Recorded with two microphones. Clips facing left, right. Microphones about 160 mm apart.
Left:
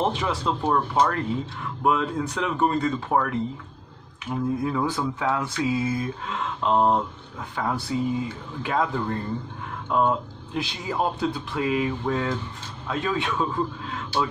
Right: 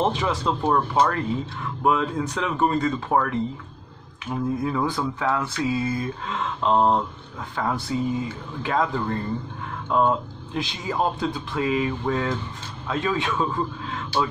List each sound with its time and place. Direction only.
0.2 s speech: centre (ahead or behind)